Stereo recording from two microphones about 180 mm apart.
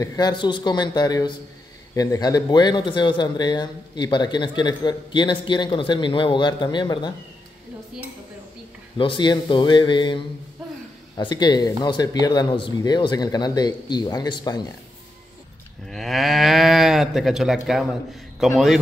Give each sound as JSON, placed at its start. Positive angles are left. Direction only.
{"t": 0.0, "sound": "speech", "side_deg": 20}
{"t": 8.9, "sound": "speech", "side_deg": 25}
{"t": 15.9, "sound": "moo", "side_deg": 0}